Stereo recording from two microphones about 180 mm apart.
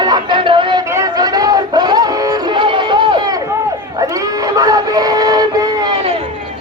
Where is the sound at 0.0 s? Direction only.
25° right (ahead or behind).